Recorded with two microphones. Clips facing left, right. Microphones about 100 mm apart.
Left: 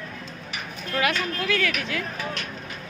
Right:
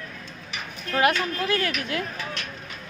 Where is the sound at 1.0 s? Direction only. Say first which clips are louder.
Right 3 dB; 45° right (ahead or behind).